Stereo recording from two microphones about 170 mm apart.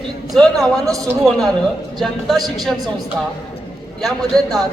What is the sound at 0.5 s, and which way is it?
Speech, 20° right (ahead or behind).